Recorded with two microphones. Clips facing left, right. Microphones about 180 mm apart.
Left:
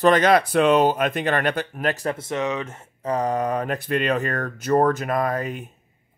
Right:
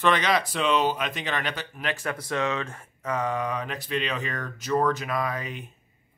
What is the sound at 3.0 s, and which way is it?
Speech, 35° left (ahead or behind).